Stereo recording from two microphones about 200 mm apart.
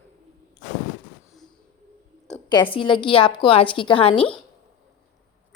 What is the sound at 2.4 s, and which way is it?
A woman's voice, 25° left (ahead or behind).